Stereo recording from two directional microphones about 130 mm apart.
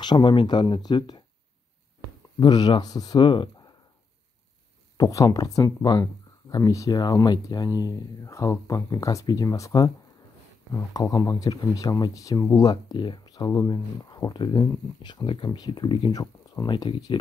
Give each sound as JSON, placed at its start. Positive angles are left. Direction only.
{"t": 0.0, "sound": "speech", "side_deg": 35}
{"t": 2.4, "sound": "speech", "side_deg": 35}
{"t": 4.9, "sound": "speech", "side_deg": 30}